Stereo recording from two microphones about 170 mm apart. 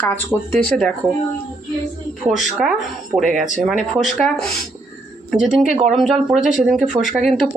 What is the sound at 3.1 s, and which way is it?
Speech, 20° right (ahead or behind).